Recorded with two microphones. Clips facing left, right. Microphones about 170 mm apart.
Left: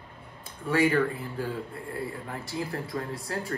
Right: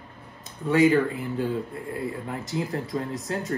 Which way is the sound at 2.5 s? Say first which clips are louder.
Right 4 dB; 20° right (ahead or behind).